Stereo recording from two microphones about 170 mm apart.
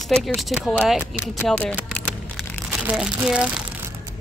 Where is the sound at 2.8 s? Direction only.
5° right (ahead or behind).